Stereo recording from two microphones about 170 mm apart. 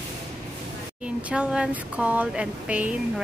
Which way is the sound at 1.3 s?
5° right (ahead or behind).